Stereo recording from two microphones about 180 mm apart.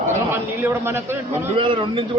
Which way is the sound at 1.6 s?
30° right (ahead or behind).